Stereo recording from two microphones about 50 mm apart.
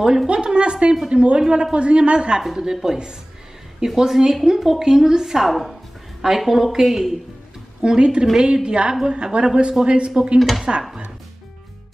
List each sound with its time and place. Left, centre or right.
0.3 s a woman's voice: right
7.8 s a woman's voice: centre